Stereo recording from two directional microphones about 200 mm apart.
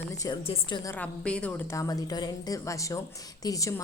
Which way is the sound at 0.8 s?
10° left (ahead or behind).